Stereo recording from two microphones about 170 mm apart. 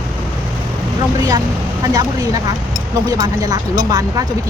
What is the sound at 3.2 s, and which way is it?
Speech, 20° right (ahead or behind).